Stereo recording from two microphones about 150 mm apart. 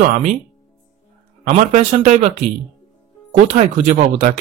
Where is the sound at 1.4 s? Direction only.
50° right (ahead or behind).